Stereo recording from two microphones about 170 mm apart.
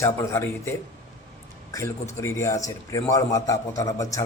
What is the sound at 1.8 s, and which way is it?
A man's voice, 15° left (ahead or behind).